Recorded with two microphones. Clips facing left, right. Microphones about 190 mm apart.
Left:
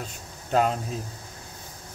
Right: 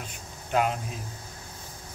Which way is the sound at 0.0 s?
40° left (ahead or behind).